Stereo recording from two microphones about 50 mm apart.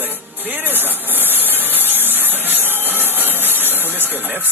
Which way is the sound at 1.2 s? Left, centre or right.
Right.